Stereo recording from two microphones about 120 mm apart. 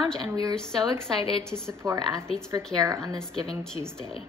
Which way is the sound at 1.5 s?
20° right (ahead or behind).